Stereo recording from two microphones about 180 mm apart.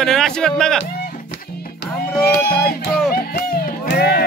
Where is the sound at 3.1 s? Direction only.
55° left (ahead or behind).